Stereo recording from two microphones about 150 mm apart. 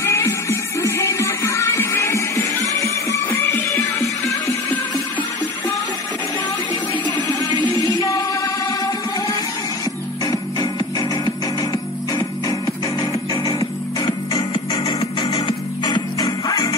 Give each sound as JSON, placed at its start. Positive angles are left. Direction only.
{"t": 0.0, "sound": "music", "side_deg": 20}
{"t": 6.7, "sound": "music", "side_deg": 20}
{"t": 10.2, "sound": "music", "side_deg": 25}